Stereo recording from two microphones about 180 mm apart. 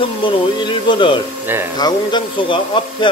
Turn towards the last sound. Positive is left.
turn(degrees=25)  # may be behind; listen again after turning